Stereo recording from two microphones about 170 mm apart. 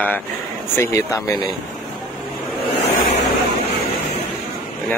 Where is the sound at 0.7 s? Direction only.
20° left (ahead or behind).